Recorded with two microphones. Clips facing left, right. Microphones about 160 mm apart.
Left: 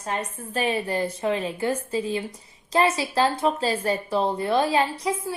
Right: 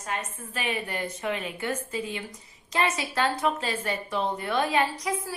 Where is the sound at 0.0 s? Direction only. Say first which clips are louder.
Left 4 dB; 35° left (ahead or behind).